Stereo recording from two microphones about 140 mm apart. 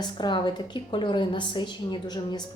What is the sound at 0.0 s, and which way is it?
A woman's voice, 30° left (ahead or behind).